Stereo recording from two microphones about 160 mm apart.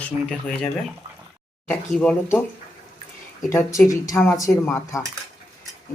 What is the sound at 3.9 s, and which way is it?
A woman's voice, 20° left (ahead or behind).